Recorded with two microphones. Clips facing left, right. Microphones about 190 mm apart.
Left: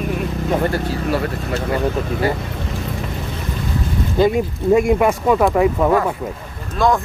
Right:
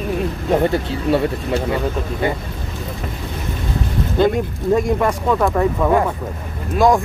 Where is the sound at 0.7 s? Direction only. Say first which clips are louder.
Right 2 dB; 25° right (ahead or behind).